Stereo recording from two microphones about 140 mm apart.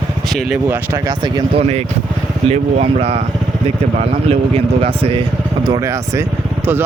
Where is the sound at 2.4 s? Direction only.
45° right (ahead or behind).